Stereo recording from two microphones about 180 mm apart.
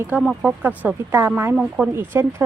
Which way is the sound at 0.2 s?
5° right (ahead or behind).